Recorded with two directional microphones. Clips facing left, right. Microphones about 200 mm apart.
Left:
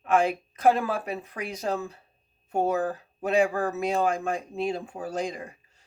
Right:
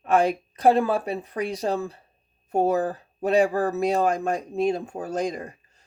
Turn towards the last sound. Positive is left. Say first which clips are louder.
# right 4 dB
turn(degrees=-40)  # may be behind; listen again after turning